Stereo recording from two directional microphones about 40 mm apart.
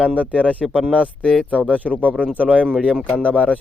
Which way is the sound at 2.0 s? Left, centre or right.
Right.